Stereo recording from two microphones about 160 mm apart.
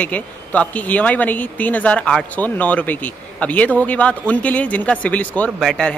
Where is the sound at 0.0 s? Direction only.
10° left (ahead or behind).